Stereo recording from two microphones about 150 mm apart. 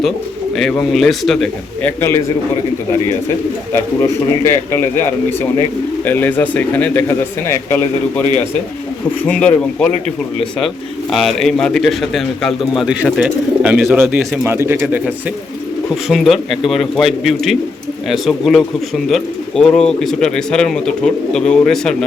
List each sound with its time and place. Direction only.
0.5 s speech: 5° left (ahead or behind)
1.8 s speech: 15° left (ahead or behind)
3.7 s speech: 15° left (ahead or behind)
9.2 s speech: 10° left (ahead or behind)
11.1 s speech: centre (ahead or behind)
16.0 s speech: centre (ahead or behind)